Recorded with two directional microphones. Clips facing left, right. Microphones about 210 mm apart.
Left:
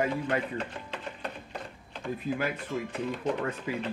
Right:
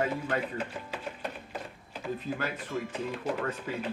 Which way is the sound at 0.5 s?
5° right (ahead or behind).